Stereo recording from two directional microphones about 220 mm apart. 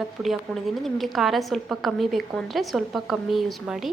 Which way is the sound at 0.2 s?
Centre (ahead or behind).